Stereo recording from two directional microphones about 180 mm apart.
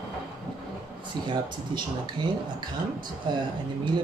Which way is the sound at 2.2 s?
25° right (ahead or behind).